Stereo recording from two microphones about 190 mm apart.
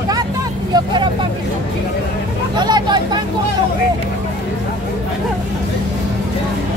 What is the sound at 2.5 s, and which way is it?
Vehicle, 20° right (ahead or behind).